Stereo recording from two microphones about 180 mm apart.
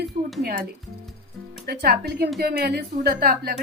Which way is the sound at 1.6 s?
60° right (ahead or behind).